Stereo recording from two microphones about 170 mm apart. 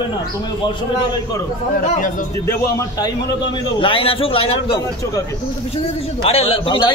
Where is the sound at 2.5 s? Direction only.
20° left (ahead or behind).